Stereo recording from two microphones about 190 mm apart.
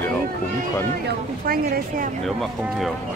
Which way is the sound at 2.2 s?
Centre (ahead or behind).